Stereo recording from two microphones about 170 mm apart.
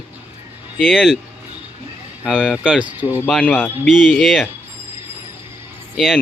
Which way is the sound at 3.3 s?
5° left (ahead or behind).